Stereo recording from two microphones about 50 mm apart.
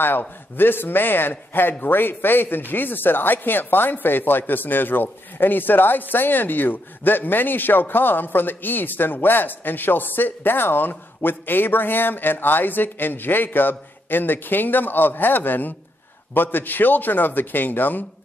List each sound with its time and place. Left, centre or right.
0.6 s speech: left